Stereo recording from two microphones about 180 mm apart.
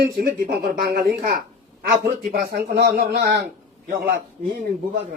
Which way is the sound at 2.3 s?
55° right (ahead or behind).